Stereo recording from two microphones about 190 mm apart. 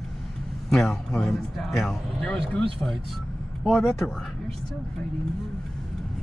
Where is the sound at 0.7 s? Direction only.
Centre (ahead or behind).